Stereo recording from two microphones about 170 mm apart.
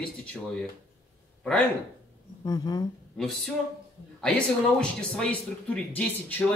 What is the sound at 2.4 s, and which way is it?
Speech, 20° left (ahead or behind).